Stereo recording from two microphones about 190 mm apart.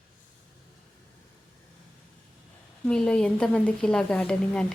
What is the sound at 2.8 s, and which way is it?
A woman's voice, 5° left (ahead or behind).